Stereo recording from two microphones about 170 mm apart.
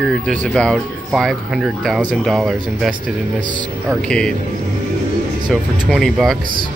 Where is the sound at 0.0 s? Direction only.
5° left (ahead or behind).